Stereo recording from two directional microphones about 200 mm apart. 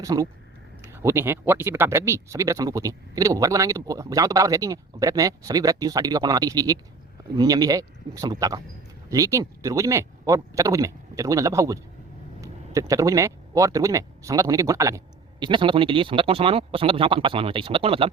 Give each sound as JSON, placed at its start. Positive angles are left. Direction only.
{"t": 0.0, "sound": "speech", "side_deg": -15}